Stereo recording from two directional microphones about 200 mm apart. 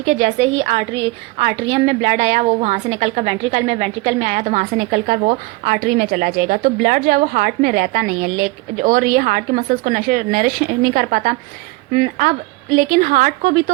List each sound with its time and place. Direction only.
0.0 s a woman's voice: 35° right (ahead or behind)